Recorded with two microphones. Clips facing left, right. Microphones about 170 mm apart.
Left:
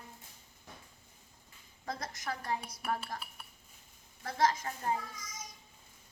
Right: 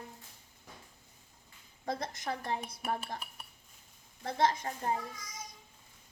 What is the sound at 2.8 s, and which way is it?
Dishes, 20° right (ahead or behind).